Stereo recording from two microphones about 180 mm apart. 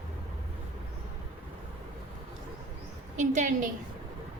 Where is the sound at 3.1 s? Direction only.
40° right (ahead or behind).